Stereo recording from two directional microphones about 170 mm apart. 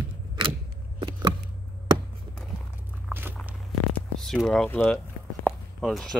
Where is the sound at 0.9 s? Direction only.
25° right (ahead or behind).